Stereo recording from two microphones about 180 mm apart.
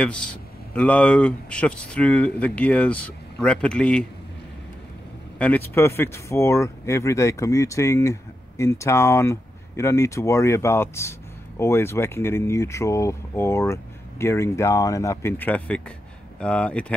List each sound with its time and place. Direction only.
0.0 s speech: 5° left (ahead or behind)
5.4 s speech: 10° left (ahead or behind)